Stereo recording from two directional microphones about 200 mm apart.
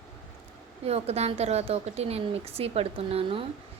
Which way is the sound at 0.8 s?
30° right (ahead or behind).